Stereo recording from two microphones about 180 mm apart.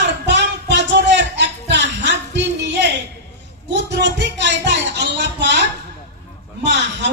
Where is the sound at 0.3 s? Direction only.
75° right (ahead or behind).